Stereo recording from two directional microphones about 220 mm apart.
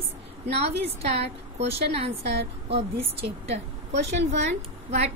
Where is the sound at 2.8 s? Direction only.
25° right (ahead or behind).